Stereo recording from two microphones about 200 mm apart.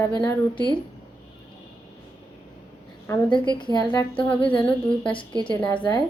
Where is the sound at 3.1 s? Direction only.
25° left (ahead or behind).